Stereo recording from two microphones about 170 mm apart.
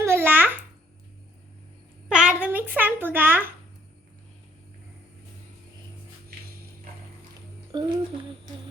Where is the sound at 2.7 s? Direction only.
10° right (ahead or behind).